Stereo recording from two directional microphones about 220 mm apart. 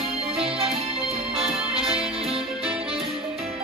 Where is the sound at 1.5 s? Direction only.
5° right (ahead or behind).